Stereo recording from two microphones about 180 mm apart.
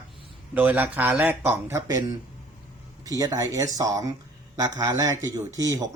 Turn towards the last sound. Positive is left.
turn(degrees=-20)  # may be behind; listen again after turning